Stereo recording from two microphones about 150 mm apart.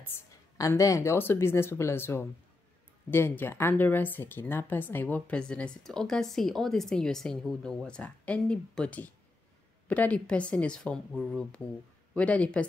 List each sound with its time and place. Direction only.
0.6 s a woman's voice: 20° left (ahead or behind)